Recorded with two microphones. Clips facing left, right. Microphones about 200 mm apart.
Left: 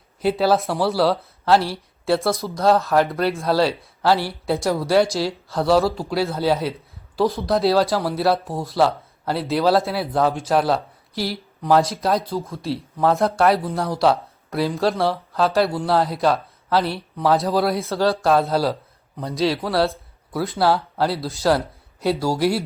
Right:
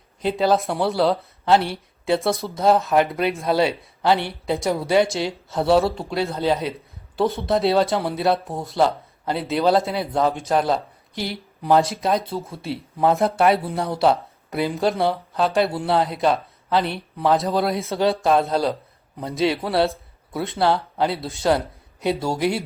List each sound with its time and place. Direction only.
0.2 s speech: 5° left (ahead or behind)
17.8 s speech: 15° right (ahead or behind)
18.3 s speech: centre (ahead or behind)